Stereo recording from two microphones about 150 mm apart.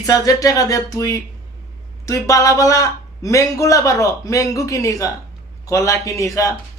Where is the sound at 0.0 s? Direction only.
25° left (ahead or behind).